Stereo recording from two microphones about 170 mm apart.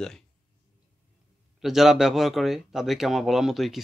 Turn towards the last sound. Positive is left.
turn(degrees=0)  # may be behind; listen again after turning